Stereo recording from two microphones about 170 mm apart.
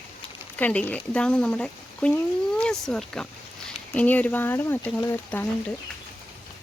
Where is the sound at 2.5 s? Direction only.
5° left (ahead or behind).